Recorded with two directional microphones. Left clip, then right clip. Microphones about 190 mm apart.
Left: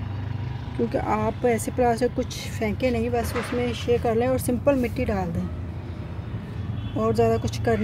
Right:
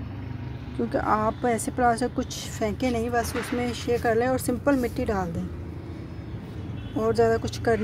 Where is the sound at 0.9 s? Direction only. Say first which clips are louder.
Right 3 dB; centre (ahead or behind).